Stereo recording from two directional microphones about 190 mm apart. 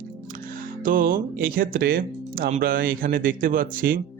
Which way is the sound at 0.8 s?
45° right (ahead or behind).